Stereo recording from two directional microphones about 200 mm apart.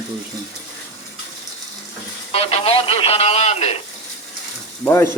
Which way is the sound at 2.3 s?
30° left (ahead or behind).